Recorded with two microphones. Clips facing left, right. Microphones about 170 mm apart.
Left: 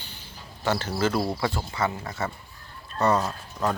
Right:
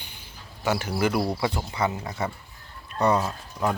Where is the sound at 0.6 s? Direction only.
10° right (ahead or behind).